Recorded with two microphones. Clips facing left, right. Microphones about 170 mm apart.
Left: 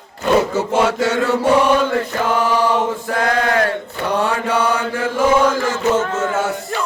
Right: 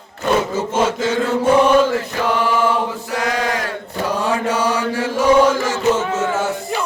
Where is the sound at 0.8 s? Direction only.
70° left (ahead or behind).